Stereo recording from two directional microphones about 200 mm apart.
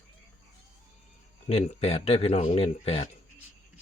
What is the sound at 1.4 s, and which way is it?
Speech, 30° left (ahead or behind).